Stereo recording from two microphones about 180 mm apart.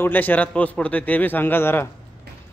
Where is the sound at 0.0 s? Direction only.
10° left (ahead or behind).